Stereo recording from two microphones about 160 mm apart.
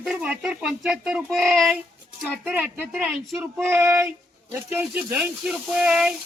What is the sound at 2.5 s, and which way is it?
Speech, 10° right (ahead or behind).